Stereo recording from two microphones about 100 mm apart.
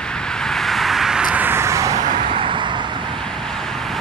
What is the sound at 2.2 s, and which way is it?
Vehicle, 55° right (ahead or behind).